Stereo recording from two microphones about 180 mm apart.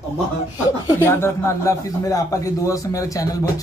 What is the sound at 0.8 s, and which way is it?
A man's voice, 15° left (ahead or behind).